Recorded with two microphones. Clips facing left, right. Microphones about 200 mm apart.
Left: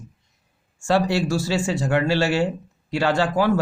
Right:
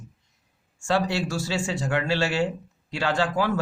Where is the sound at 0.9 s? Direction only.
40° left (ahead or behind).